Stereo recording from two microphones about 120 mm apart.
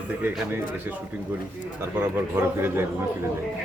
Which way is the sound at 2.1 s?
15° right (ahead or behind).